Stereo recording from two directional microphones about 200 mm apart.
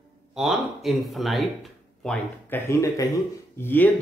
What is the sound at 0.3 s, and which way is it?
Speech, centre (ahead or behind).